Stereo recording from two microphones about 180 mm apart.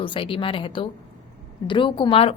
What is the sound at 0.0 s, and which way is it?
A woman's voice, 30° left (ahead or behind).